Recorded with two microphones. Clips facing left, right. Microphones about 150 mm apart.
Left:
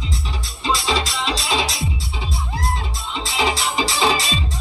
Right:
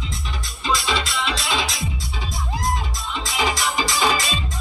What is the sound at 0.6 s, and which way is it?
Music, 30° left (ahead or behind).